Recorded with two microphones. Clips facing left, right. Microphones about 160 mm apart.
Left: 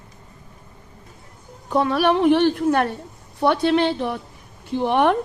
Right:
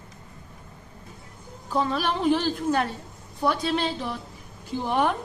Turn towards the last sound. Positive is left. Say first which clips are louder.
# left 6 dB
turn(degrees=70)  # may be behind; listen again after turning